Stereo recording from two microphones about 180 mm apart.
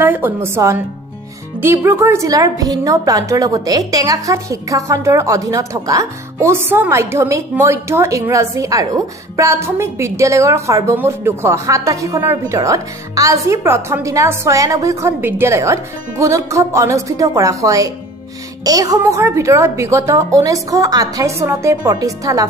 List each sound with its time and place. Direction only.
0.0 s a woman's voice: 10° right (ahead or behind)